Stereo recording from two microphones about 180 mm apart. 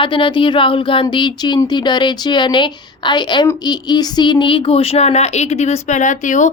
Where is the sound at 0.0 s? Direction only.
30° left (ahead or behind).